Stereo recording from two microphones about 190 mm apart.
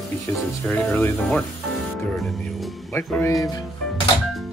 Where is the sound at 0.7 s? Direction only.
5° left (ahead or behind).